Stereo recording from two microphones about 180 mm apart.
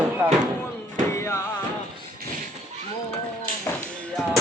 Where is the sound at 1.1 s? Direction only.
15° left (ahead or behind).